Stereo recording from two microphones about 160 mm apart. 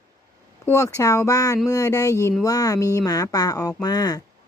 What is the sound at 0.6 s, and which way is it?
Speech, 20° left (ahead or behind).